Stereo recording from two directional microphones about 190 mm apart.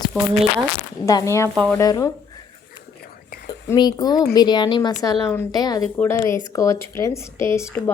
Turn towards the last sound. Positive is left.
turn(degrees=5)  # may be behind; listen again after turning